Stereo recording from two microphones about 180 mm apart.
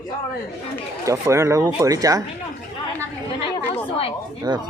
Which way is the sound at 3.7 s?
30° left (ahead or behind).